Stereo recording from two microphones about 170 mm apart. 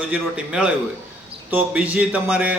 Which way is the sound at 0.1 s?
5° right (ahead or behind).